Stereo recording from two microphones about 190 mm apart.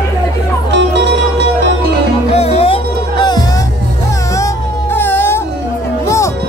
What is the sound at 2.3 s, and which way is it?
Music, 30° left (ahead or behind).